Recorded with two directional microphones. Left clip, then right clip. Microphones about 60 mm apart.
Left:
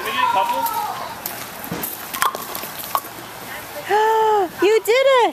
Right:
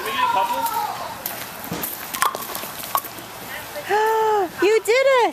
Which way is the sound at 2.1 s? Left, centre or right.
Centre.